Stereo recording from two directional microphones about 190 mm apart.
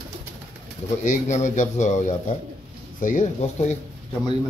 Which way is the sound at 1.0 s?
40° left (ahead or behind).